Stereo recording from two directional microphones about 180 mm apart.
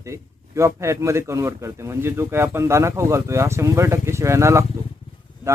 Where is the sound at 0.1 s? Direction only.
15° right (ahead or behind).